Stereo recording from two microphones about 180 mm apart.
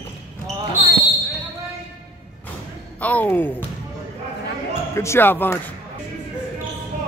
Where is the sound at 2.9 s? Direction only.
10° left (ahead or behind).